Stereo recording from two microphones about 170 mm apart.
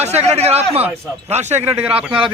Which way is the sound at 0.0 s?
40° right (ahead or behind).